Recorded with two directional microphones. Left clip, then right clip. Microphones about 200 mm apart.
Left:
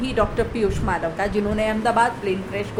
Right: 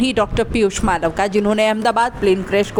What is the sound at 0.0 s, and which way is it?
Speech, 40° right (ahead or behind).